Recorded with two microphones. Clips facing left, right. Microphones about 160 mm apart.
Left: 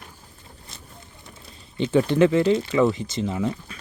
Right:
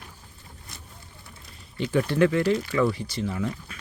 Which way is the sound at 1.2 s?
20° left (ahead or behind).